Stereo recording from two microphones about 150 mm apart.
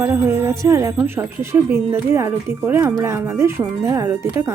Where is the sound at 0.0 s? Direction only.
15° right (ahead or behind).